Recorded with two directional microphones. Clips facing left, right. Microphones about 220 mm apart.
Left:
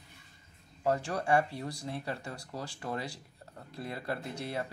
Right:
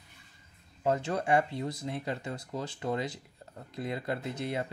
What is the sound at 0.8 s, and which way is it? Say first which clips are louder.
Speech: right 1 dB; 20° right (ahead or behind).